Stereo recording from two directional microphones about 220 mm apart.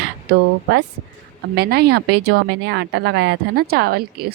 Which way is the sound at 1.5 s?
45° right (ahead or behind).